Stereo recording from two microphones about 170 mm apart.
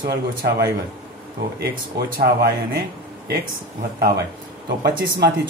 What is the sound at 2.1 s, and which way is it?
Speech, 60° right (ahead or behind).